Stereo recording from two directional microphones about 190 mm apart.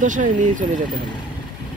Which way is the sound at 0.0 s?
40° right (ahead or behind).